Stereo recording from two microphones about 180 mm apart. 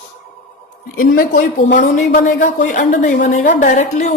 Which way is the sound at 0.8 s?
50° left (ahead or behind).